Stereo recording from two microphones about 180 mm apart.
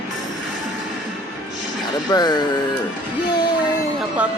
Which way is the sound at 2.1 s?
25° left (ahead or behind).